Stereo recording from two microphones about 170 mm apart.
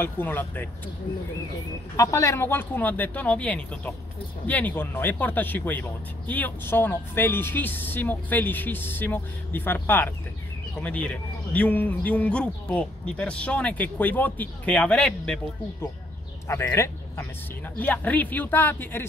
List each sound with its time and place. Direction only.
0.0 s speech: 10° left (ahead or behind)
2.0 s speech: 20° left (ahead or behind)
16.4 s speech: 15° left (ahead or behind)